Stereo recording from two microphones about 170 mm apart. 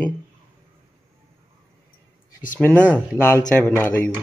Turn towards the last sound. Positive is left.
turn(degrees=10)  # may be behind; listen again after turning